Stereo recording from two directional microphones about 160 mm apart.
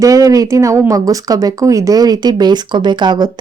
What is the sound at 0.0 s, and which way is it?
Speech, 20° right (ahead or behind).